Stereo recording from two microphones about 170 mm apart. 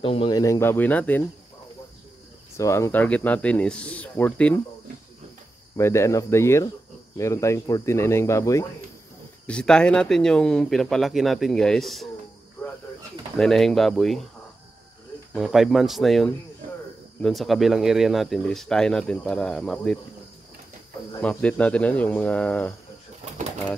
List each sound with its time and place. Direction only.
0.0 s speech: 30° left (ahead or behind)
0.4 s speech: 15° left (ahead or behind)
2.5 s speech: 15° left (ahead or behind)
5.8 s speech: 15° left (ahead or behind)
9.5 s speech: 5° left (ahead or behind)
13.4 s speech: centre (ahead or behind)
15.3 s speech: centre (ahead or behind)
21.2 s speech: 5° left (ahead or behind)